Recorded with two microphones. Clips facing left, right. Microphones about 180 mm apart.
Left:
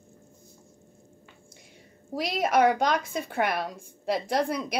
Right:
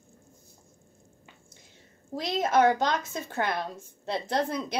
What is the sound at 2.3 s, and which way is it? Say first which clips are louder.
A woman's voice: even; 10° left (ahead or behind).